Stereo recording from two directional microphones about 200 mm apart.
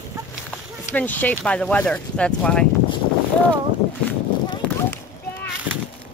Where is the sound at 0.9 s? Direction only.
10° left (ahead or behind).